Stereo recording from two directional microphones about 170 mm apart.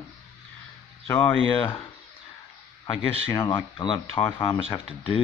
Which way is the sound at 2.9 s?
30° left (ahead or behind).